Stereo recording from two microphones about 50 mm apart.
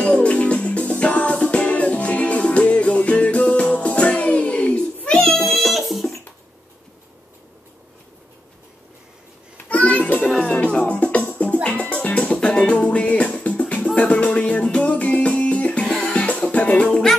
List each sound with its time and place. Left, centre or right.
0.0 s music: left
5.5 s music: centre
9.7 s a sound: left
10.4 s music: left
16.9 s music: centre